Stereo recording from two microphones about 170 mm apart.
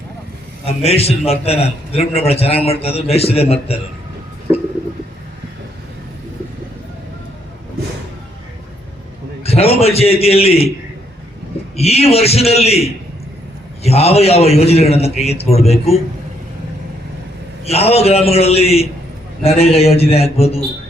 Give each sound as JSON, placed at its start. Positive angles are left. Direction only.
{"t": 0.6, "sound": "a man's voice", "side_deg": 35}
{"t": 9.4, "sound": "a man's voice", "side_deg": 35}
{"t": 11.8, "sound": "a man's voice", "side_deg": 35}
{"t": 17.7, "sound": "a man's voice", "side_deg": 35}